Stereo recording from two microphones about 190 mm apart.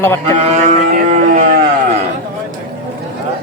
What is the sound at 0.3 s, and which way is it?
Cattle, 40° right (ahead or behind).